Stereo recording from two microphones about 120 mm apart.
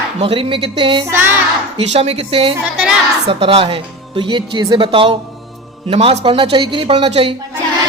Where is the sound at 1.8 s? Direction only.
55° right (ahead or behind).